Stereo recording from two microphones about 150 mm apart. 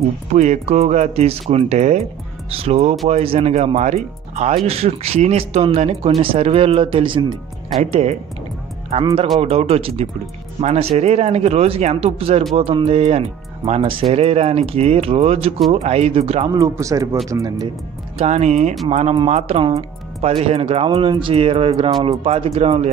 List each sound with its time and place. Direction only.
0.3 s speech: 50° right (ahead or behind); by 7.3 s 30° right (ahead or behind)
7.8 s speech: 45° right (ahead or behind)
16.5 s speech: 20° right (ahead or behind)
18.1 s speech: 45° right (ahead or behind)